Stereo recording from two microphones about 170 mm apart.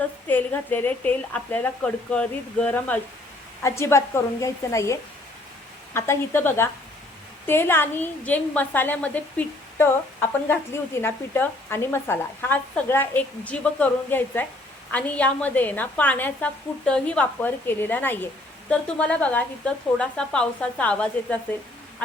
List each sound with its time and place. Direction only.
0.3 s speech: 10° left (ahead or behind)